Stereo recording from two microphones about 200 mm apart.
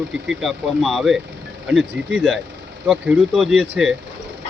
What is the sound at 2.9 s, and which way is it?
Speech, centre (ahead or behind).